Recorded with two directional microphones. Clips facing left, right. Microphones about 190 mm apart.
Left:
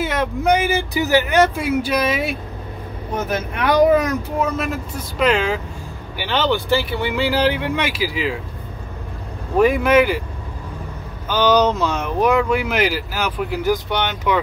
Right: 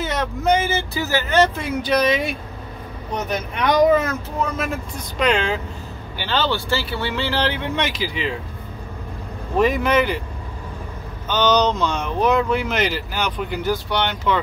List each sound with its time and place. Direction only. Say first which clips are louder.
0.0 s speech: left 2 dB; 10° left (ahead or behind)
9.6 s speech: left 4 dB; 10° left (ahead or behind)
11.2 s speech: left 2 dB; 10° left (ahead or behind)
13.8 s speech: left 1 dB; 20° left (ahead or behind)